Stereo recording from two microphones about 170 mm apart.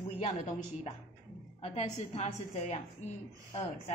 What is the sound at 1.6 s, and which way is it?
A woman's voice, 40° left (ahead or behind).